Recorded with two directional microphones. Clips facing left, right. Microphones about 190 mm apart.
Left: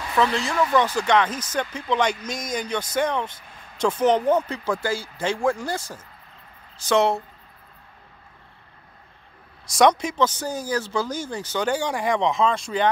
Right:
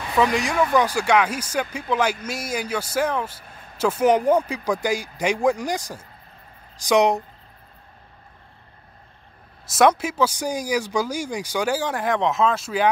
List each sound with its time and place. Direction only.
0.1 s speech: 15° right (ahead or behind)
9.8 s speech: 5° right (ahead or behind)